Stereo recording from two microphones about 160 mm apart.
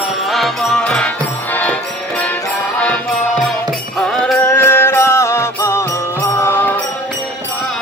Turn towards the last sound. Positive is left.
turn(degrees=15)  # may be behind; listen again after turning